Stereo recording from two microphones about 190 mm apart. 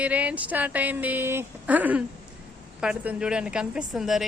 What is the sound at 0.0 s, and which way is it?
A woman's voice, 5° right (ahead or behind).